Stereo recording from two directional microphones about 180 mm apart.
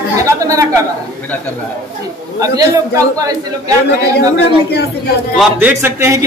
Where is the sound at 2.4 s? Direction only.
20° right (ahead or behind).